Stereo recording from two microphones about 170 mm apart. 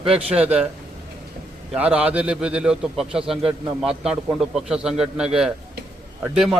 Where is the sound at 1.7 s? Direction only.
5° right (ahead or behind).